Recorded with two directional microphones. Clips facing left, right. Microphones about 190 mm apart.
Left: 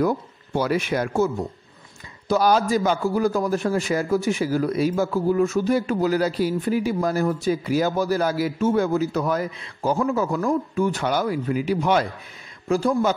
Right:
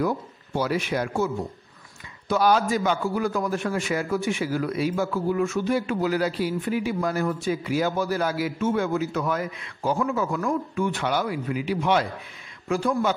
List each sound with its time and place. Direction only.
0.6 s a man's voice: 50° left (ahead or behind)